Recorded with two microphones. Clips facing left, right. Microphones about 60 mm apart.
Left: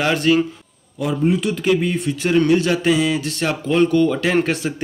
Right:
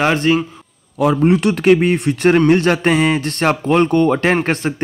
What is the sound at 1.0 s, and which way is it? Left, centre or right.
A man's voice, right.